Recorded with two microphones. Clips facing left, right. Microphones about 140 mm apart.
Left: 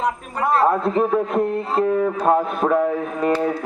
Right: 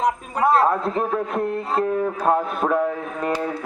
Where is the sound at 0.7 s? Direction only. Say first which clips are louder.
Left 4 dB; centre (ahead or behind).